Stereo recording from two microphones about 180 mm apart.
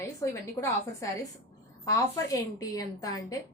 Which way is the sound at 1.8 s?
20° left (ahead or behind).